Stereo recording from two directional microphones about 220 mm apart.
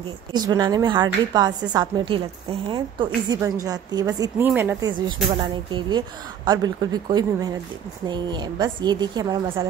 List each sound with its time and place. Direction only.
0.3 s a woman's voice: 20° right (ahead or behind)
5.0 s speech: 20° right (ahead or behind)